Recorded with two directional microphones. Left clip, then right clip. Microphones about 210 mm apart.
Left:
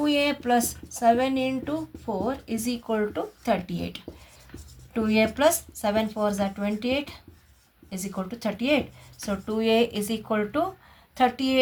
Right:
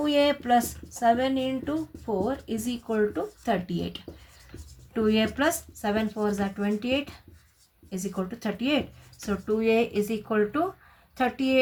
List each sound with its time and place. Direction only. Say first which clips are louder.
0.0 s speech: right 1 dB; 30° left (ahead or behind)
4.9 s speech: left 2 dB; 30° left (ahead or behind)